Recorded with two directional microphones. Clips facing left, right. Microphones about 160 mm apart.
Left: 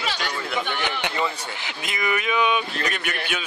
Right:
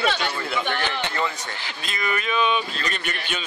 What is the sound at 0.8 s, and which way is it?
Speech, 15° left (ahead or behind).